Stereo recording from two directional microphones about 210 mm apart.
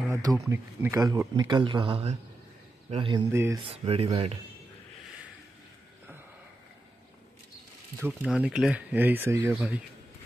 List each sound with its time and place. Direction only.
0.1 s speech: 15° right (ahead or behind)
3.3 s speech: 10° right (ahead or behind)
3.6 s speech: 25° right (ahead or behind)
8.0 s speech: 5° right (ahead or behind)